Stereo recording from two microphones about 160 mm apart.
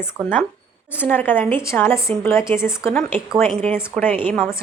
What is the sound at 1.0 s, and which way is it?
Speech, 10° left (ahead or behind).